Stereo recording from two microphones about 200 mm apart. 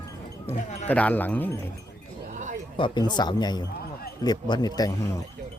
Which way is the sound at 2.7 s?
25° left (ahead or behind).